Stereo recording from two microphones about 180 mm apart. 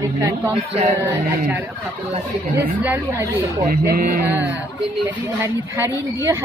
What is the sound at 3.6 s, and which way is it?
Speech, 55° right (ahead or behind).